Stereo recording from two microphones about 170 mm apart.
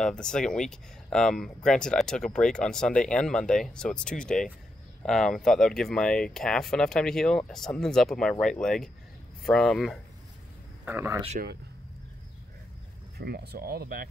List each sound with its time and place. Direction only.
0.0 s speech: 5° left (ahead or behind)
10.9 s speech: 10° right (ahead or behind)
13.2 s speech: 70° right (ahead or behind)